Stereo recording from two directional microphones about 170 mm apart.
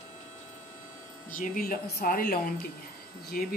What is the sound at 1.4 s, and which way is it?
A woman's voice, 55° left (ahead or behind).